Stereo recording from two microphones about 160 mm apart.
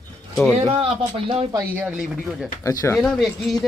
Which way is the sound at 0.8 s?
35° right (ahead or behind).